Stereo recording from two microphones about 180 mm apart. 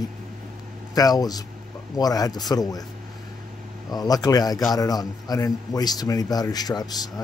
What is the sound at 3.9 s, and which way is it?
A man's voice, 20° left (ahead or behind).